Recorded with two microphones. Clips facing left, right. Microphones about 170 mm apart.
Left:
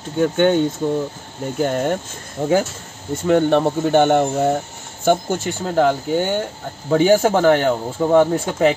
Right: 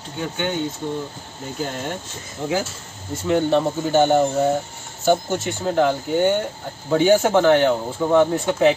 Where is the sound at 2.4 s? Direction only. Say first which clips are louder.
Left 6 dB; 45° left (ahead or behind).